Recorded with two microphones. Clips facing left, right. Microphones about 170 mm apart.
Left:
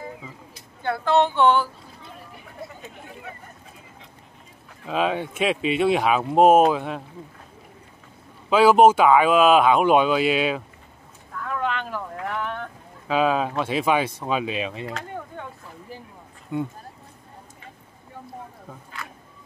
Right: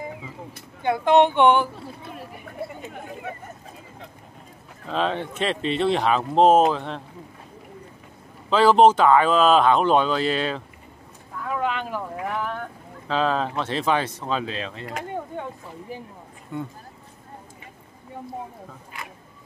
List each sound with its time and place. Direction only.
0.8 s speech: 15° right (ahead or behind)
4.8 s speech: 10° left (ahead or behind)
8.5 s speech: 10° left (ahead or behind)
11.4 s boat: 10° right (ahead or behind)
13.1 s speech: 10° left (ahead or behind)
16.5 s speech: 15° left (ahead or behind)